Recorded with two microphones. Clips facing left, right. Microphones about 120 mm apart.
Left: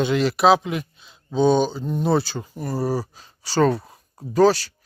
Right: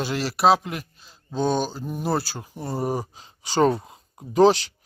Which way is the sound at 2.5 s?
15° right (ahead or behind).